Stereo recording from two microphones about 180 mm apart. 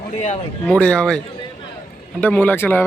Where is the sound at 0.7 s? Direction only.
5° left (ahead or behind).